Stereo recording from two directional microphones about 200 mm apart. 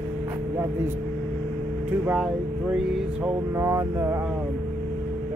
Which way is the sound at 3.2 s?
10° right (ahead or behind).